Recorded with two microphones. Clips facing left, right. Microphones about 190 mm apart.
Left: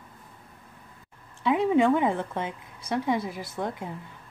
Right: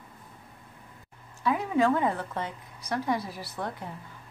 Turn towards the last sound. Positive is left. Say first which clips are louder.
# left 3 dB
turn(degrees=20)  # may be behind; listen again after turning